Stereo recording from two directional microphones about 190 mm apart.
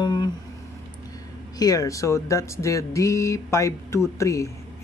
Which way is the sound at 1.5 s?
20° left (ahead or behind).